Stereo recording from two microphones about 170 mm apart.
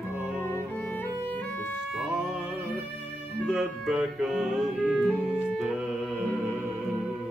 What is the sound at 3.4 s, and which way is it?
Music, 5° right (ahead or behind).